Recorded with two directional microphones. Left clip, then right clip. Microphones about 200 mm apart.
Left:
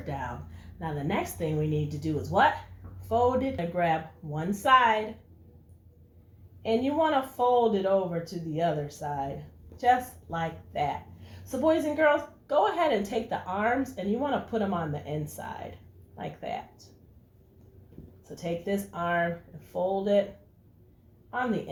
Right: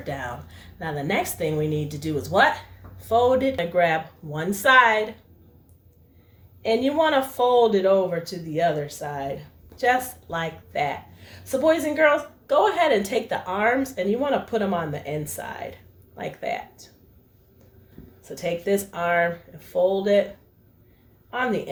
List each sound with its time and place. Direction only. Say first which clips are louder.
0.0 s a woman's voice: right 5 dB; 30° right (ahead or behind)
6.6 s a woman's voice: right 5 dB; 35° right (ahead or behind)
18.3 s a woman's voice: right 8 dB; 35° right (ahead or behind)
21.2 s a woman's voice: right 5 dB; 35° right (ahead or behind)